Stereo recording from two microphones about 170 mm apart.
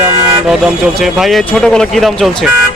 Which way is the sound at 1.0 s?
Centre (ahead or behind).